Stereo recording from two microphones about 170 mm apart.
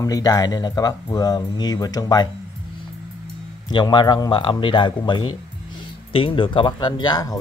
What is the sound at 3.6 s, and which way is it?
Speech, 25° left (ahead or behind).